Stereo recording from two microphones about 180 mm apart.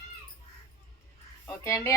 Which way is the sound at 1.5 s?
15° left (ahead or behind).